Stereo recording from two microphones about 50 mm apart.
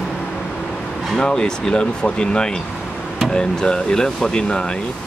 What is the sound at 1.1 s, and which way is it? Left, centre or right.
Speech, centre.